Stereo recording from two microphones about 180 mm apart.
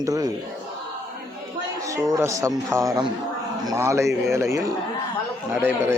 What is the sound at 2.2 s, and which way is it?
Speech, 15° right (ahead or behind).